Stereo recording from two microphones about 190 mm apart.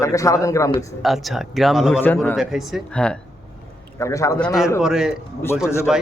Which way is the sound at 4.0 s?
15° left (ahead or behind).